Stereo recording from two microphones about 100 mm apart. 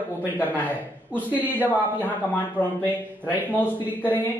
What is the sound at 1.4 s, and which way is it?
Speech, 15° right (ahead or behind).